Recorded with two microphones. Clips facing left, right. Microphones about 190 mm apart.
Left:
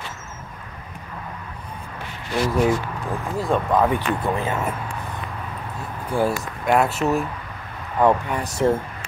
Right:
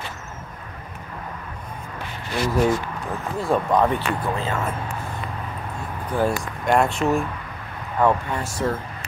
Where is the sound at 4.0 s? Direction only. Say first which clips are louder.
Left 2 dB; 15° left (ahead or behind).